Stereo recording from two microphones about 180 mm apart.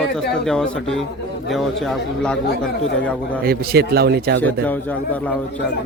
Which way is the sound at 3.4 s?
60° right (ahead or behind).